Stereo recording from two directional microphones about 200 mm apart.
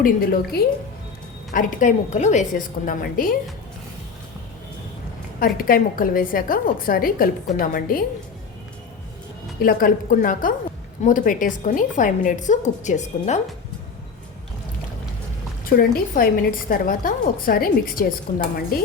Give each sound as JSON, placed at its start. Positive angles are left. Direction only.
{"t": 0.0, "sound": "a woman's voice", "side_deg": 50}
{"t": 5.4, "sound": "a woman's voice", "side_deg": 45}
{"t": 9.6, "sound": "a woman's voice", "side_deg": 45}
{"t": 15.7, "sound": "a woman's voice", "side_deg": 45}